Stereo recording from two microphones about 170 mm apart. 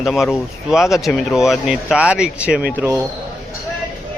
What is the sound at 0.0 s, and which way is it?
Speech, centre (ahead or behind).